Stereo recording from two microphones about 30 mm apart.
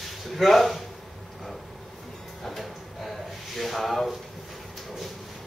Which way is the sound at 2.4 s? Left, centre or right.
Centre.